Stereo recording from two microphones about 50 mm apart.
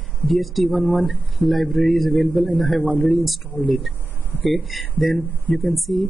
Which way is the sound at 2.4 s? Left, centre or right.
Left.